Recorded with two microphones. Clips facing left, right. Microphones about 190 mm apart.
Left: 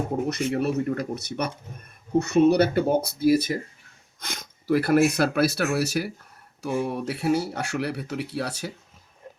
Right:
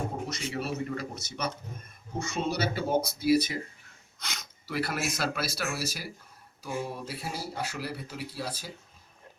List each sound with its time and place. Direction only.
0.3 s speech: 55° left (ahead or behind)